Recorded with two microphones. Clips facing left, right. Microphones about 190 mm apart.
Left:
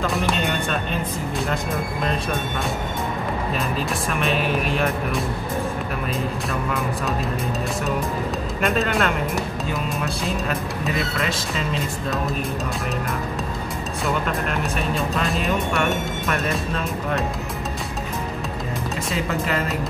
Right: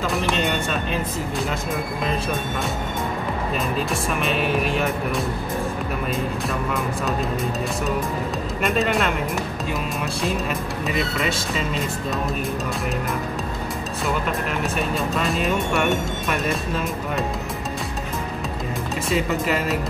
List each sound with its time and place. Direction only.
4.2 s speech: centre (ahead or behind)
8.6 s speech: centre (ahead or behind)
11.1 s speech: centre (ahead or behind)
14.8 s speech: centre (ahead or behind)
19.0 s speech: centre (ahead or behind)